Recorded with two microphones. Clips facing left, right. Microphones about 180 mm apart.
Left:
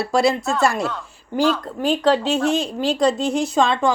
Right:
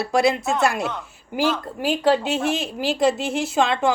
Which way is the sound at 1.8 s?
5° right (ahead or behind).